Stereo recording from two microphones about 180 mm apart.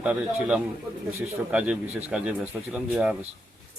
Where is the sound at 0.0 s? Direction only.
5° right (ahead or behind).